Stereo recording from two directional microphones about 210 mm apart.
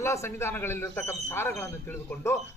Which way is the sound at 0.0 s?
15° left (ahead or behind).